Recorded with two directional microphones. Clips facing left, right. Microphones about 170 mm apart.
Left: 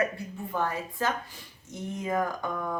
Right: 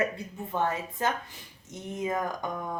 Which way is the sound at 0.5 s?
20° right (ahead or behind).